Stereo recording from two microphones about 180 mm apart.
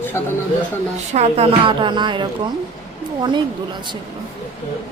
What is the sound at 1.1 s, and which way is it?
Speech, 35° right (ahead or behind).